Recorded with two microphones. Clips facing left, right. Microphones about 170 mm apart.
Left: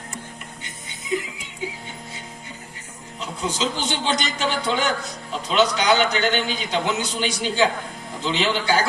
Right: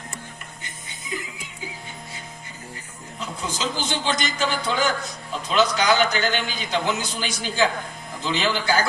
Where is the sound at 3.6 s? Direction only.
25° left (ahead or behind).